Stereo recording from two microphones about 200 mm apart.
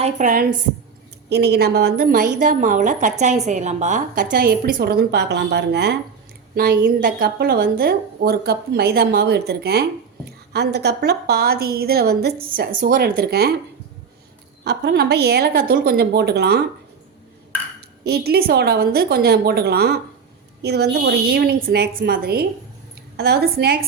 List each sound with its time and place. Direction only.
0.0 s a woman's voice: 40° right (ahead or behind)
1.3 s a woman's voice: 55° right (ahead or behind)
6.6 s a woman's voice: 45° right (ahead or behind)
14.6 s a woman's voice: 55° right (ahead or behind)
18.0 s a woman's voice: 55° right (ahead or behind)